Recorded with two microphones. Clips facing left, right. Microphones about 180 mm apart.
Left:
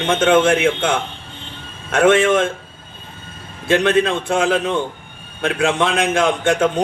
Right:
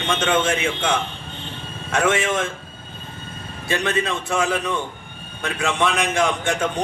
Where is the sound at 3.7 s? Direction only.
60° left (ahead or behind).